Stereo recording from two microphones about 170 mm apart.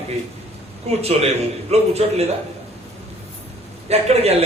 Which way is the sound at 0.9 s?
40° right (ahead or behind).